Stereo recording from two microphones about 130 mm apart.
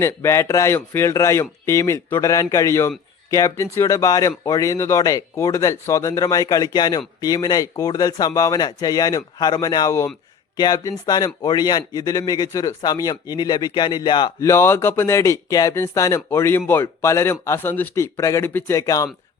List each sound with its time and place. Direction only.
0.0 s a man's voice: 20° left (ahead or behind); by 14.3 s 35° left (ahead or behind)
14.4 s speech: 20° left (ahead or behind)